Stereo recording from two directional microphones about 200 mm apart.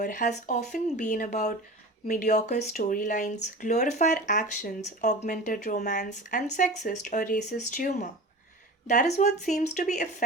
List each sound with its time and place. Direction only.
0.0 s speech: 40° left (ahead or behind)